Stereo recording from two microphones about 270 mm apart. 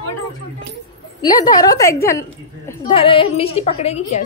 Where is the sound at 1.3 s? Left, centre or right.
Centre.